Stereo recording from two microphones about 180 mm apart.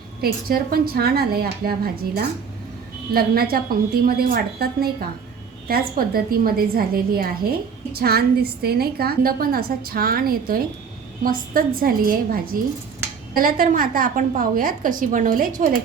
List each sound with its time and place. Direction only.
0.2 s a woman's voice: 55° right (ahead or behind)